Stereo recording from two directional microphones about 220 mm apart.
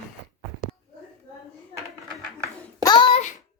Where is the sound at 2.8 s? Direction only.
20° left (ahead or behind).